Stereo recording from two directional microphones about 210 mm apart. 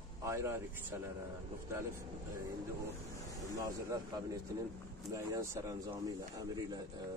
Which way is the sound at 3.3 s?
15° right (ahead or behind).